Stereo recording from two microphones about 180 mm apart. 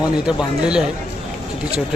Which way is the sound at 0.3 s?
5° right (ahead or behind).